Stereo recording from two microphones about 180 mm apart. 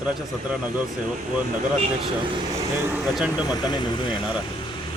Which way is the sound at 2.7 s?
15° right (ahead or behind).